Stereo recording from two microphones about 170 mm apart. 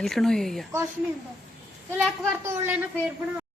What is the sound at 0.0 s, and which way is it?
Speech, centre (ahead or behind).